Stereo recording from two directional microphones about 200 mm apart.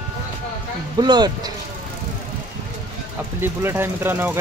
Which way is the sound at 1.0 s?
20° right (ahead or behind).